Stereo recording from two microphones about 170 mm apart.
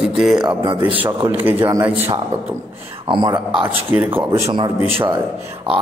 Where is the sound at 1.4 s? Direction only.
10° right (ahead or behind).